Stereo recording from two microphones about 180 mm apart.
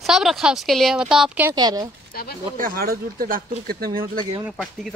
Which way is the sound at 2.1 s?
55° left (ahead or behind).